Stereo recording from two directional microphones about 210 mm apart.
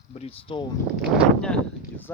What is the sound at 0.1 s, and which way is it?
Speech, 30° left (ahead or behind).